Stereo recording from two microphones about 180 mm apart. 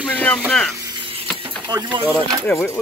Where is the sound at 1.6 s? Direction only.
25° right (ahead or behind).